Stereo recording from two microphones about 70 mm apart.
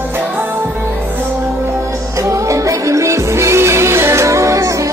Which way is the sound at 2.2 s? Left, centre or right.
Right.